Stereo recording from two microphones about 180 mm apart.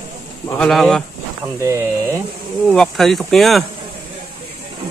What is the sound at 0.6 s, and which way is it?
Speech, centre (ahead or behind).